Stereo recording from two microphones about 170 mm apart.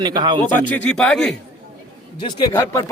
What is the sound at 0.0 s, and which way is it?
Speech, 25° right (ahead or behind).